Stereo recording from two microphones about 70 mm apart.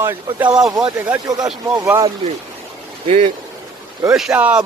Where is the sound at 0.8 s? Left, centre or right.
Right.